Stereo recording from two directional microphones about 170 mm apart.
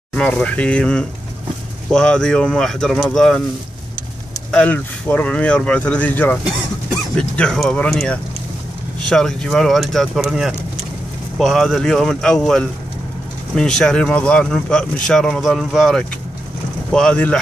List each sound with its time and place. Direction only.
0.1 s speech: 5° left (ahead or behind)
4.5 s speech: 10° left (ahead or behind)